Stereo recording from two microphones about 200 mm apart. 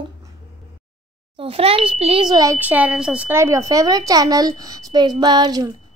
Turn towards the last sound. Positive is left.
turn(degrees=-20)  # may be behind; listen again after turning